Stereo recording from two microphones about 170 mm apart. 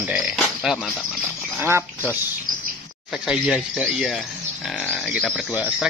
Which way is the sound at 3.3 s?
5° right (ahead or behind).